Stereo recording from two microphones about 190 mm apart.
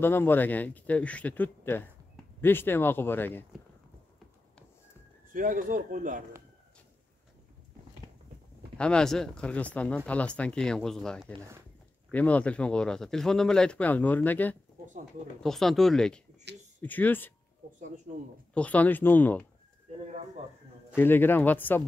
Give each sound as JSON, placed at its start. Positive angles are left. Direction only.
{"t": 0.0, "sound": "a man's voice", "side_deg": 10}
{"t": 5.3, "sound": "speech", "side_deg": -45}
{"t": 8.7, "sound": "a man's voice", "side_deg": 5}
{"t": 18.5, "sound": "a man's voice", "side_deg": 5}
{"t": 20.9, "sound": "a man's voice", "side_deg": 10}